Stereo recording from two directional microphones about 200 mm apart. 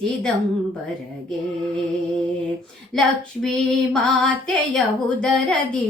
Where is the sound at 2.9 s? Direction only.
Centre (ahead or behind).